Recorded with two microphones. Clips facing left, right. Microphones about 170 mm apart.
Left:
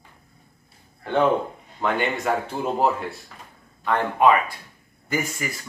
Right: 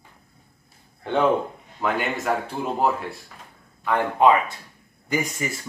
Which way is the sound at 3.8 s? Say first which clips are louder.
Right 1 dB; 10° right (ahead or behind).